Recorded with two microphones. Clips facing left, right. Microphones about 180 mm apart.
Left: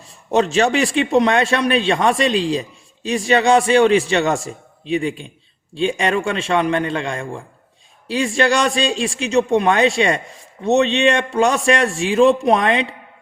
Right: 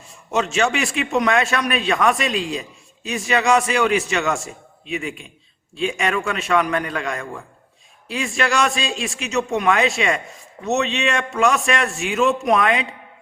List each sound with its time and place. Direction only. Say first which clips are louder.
0.1 s a man's voice: left 5 dB; 35° left (ahead or behind)